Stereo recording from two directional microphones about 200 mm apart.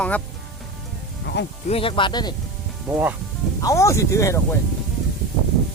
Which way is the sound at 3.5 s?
15° left (ahead or behind).